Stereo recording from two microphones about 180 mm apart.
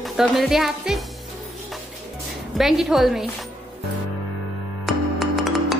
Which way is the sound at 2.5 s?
Centre (ahead or behind).